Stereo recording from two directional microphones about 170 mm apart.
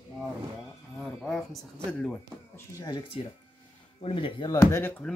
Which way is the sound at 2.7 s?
25° left (ahead or behind).